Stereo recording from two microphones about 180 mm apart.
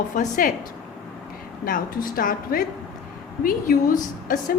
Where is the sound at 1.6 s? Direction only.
50° left (ahead or behind).